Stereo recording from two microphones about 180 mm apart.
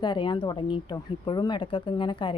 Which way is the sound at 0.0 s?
25° left (ahead or behind).